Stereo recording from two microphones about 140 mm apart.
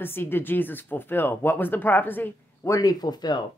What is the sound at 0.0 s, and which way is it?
Speech, 15° left (ahead or behind).